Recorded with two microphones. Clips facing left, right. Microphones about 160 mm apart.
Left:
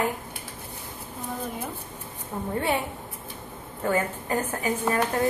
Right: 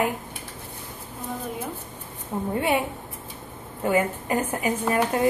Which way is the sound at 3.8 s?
15° right (ahead or behind).